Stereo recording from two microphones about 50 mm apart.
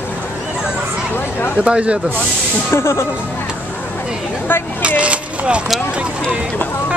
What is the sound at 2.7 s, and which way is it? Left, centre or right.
Speech, left.